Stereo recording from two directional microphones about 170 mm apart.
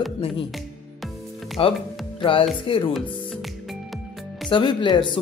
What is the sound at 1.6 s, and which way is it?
Speech, 30° left (ahead or behind).